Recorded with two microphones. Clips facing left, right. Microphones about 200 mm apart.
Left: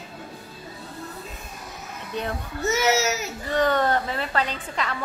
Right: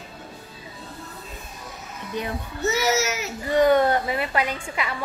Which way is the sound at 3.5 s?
10° right (ahead or behind).